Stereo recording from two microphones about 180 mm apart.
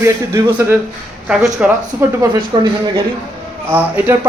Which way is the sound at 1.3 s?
5° right (ahead or behind).